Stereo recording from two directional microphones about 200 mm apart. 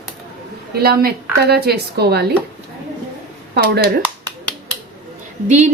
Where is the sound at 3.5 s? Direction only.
50° right (ahead or behind).